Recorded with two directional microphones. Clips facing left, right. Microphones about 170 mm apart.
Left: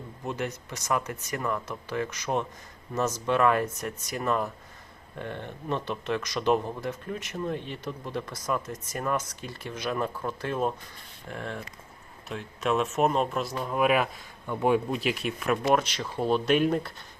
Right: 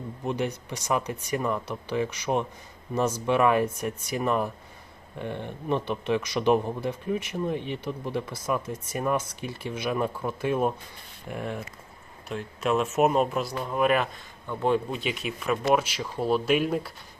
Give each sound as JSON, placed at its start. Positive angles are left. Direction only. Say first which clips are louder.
{"t": 0.3, "sound": "speech", "louder": "right 3 dB", "side_deg": -15}